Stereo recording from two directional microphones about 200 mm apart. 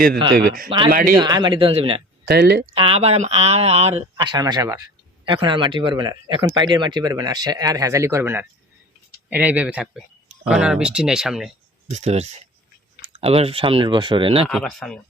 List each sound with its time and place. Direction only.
0.9 s speech: 45° right (ahead or behind)
1.1 s speech: 20° right (ahead or behind)
2.2 s speech: 55° right (ahead or behind)
2.7 s speech: 30° right (ahead or behind); by 11.5 s centre (ahead or behind)
11.9 s speech: 35° right (ahead or behind)
14.4 s speech: centre (ahead or behind)